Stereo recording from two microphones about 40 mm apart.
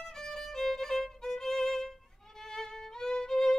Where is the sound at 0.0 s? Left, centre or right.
Centre.